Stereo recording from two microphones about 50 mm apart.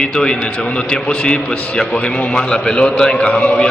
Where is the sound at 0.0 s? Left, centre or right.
Centre.